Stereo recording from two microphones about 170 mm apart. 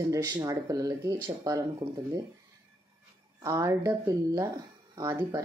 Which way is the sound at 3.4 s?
20° right (ahead or behind).